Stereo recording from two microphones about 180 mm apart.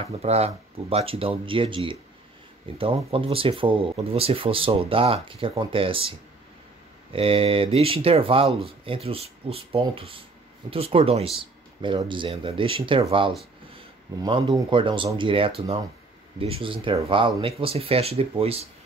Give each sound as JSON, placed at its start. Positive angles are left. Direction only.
{"t": 0.2, "sound": "speech", "side_deg": -35}
{"t": 14.2, "sound": "speech", "side_deg": -20}